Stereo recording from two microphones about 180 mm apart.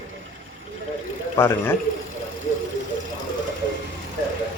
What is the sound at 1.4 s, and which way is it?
Speech, 10° left (ahead or behind).